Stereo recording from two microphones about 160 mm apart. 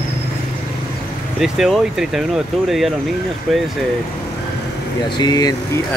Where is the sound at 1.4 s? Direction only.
Centre (ahead or behind).